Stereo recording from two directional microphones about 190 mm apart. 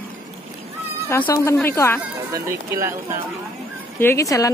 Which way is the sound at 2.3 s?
15° right (ahead or behind).